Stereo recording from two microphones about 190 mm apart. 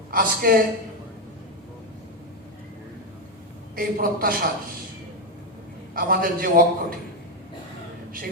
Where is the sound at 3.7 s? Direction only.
50° right (ahead or behind).